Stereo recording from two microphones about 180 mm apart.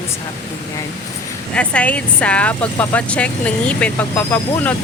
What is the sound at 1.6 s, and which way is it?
Speech, 10° left (ahead or behind).